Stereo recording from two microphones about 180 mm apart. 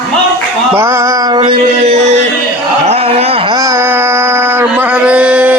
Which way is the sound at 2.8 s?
35° right (ahead or behind).